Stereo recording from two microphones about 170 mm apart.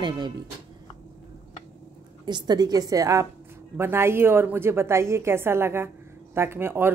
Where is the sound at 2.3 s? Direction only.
25° right (ahead or behind).